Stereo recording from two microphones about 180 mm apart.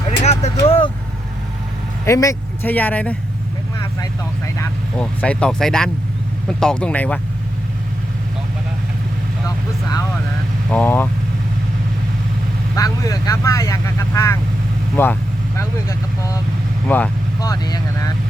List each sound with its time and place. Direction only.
0.2 s vehicle: 35° left (ahead or behind)
0.6 s speech: 30° left (ahead or behind)
2.0 s speech: 15° left (ahead or behind)
4.9 s speech: 5° left (ahead or behind)
10.7 s speech: 10° left (ahead or behind)
12.7 s speech: 20° left (ahead or behind)
17.4 s speech: 20° left (ahead or behind)